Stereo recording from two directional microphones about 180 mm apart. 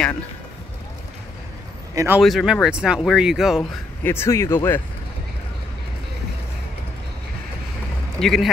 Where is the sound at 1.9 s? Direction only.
15° right (ahead or behind).